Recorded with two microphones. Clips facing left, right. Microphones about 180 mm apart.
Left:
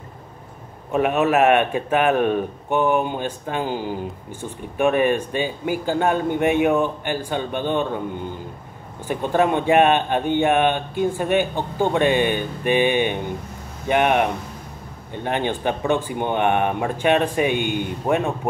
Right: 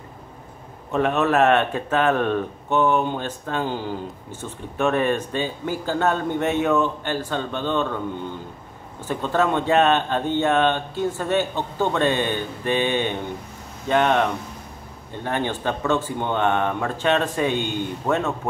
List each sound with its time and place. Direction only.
0.9 s a man's voice: 10° left (ahead or behind)
9.0 s a man's voice: 15° left (ahead or behind)